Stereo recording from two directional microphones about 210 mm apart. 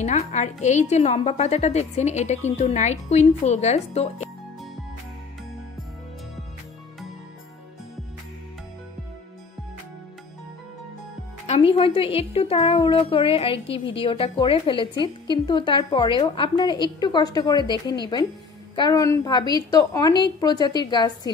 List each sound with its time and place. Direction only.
0.0 s a woman's voice: 30° left (ahead or behind)
11.4 s a woman's voice: 30° left (ahead or behind)